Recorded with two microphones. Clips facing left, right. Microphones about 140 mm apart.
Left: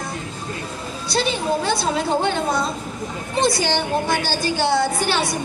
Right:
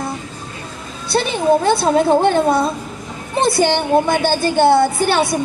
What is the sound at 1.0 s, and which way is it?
A woman's voice, 55° right (ahead or behind).